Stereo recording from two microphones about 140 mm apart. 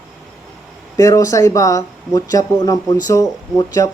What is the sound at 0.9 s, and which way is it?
Speech, 25° left (ahead or behind).